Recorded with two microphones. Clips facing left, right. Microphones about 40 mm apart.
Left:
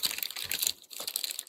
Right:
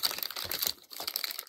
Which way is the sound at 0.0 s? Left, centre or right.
Left.